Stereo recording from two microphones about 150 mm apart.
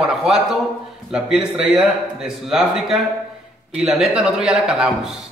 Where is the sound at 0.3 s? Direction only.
5° right (ahead or behind).